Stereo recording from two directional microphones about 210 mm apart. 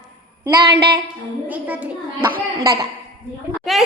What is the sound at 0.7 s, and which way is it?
Speech, 50° right (ahead or behind).